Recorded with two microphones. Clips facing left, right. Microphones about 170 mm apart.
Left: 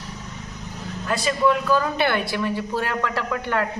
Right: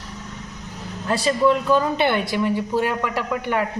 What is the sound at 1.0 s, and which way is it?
A woman's voice, 30° right (ahead or behind).